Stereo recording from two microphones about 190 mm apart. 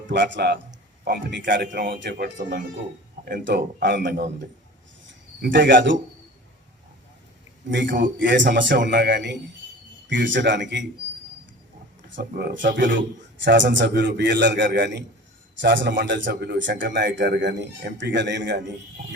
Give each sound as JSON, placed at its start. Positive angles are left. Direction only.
{"t": 0.1, "sound": "a man's voice", "side_deg": -65}
{"t": 7.7, "sound": "a man's voice", "side_deg": -70}
{"t": 12.1, "sound": "a man's voice", "side_deg": -55}